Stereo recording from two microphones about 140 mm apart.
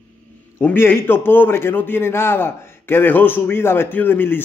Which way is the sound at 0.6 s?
15° left (ahead or behind).